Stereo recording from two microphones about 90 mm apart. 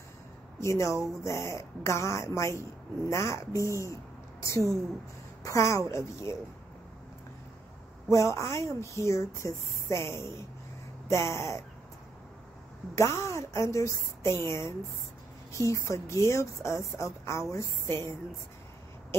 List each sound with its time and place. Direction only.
0.6 s a woman's voice: 35° left (ahead or behind)
8.1 s speech: 35° left (ahead or behind)
12.9 s speech: 30° left (ahead or behind)